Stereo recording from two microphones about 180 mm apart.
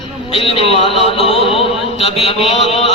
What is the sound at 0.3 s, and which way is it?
A man's voice, 30° left (ahead or behind).